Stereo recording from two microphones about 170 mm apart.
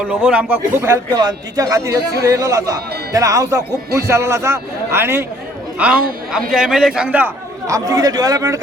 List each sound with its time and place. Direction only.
0.1 s a man's voice: 5° right (ahead or behind)
7.7 s speech: 20° right (ahead or behind)